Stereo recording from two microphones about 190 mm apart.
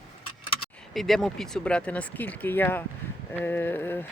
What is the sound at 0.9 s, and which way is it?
Speech, centre (ahead or behind).